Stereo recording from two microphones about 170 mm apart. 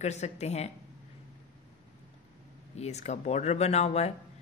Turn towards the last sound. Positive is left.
turn(degrees=40)  # may be behind; listen again after turning